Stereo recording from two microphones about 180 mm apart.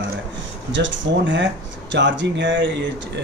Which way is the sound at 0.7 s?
90° right.